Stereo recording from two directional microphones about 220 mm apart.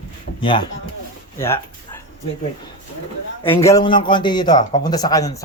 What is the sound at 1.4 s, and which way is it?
Speech, 10° left (ahead or behind).